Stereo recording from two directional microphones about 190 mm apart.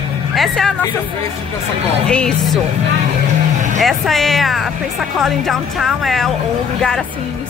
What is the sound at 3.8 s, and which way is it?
Speech, centre (ahead or behind).